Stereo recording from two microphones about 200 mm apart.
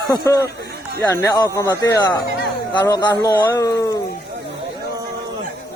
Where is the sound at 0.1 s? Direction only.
15° left (ahead or behind).